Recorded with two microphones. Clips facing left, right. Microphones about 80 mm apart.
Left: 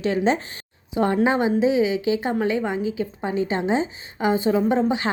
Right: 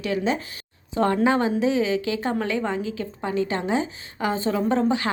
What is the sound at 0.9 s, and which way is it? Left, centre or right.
A woman's voice, centre.